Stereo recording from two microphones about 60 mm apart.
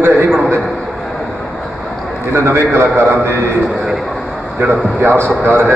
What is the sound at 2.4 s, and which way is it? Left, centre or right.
Speech, right.